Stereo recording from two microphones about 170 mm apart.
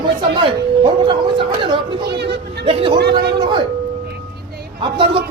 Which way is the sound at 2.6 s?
30° right (ahead or behind).